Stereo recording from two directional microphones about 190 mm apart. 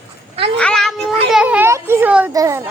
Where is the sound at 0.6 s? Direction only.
Centre (ahead or behind).